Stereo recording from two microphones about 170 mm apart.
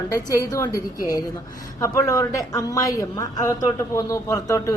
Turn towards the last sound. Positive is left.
turn(degrees=20)  # may be behind; listen again after turning